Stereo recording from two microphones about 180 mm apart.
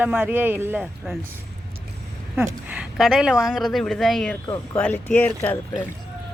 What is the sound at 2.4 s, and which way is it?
A woman's voice, 5° right (ahead or behind).